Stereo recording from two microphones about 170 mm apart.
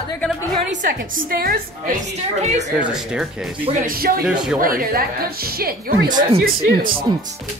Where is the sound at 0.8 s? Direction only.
60° right (ahead or behind).